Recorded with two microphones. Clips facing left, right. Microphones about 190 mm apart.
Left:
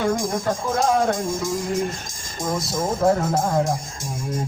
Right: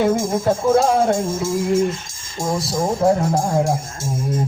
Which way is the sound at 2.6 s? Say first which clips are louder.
Right 3 dB; 20° right (ahead or behind).